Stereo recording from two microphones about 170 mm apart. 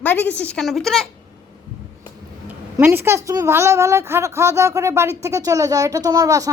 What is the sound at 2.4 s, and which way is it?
A woman's voice, 10° right (ahead or behind).